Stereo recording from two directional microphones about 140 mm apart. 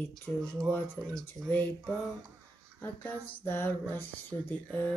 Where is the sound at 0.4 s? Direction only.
5° left (ahead or behind).